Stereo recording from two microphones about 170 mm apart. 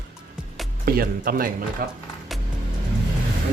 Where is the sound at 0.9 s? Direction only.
60° right (ahead or behind).